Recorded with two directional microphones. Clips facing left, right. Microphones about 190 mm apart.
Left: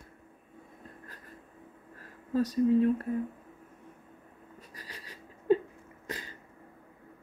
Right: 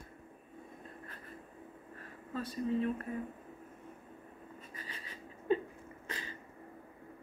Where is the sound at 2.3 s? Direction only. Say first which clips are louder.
Left 10 dB; 40° left (ahead or behind).